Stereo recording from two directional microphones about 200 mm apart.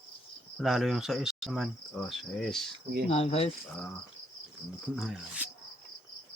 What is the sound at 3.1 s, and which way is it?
Cricket, 30° left (ahead or behind).